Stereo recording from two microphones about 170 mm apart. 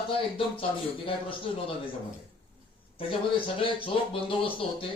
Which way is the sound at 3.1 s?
30° left (ahead or behind).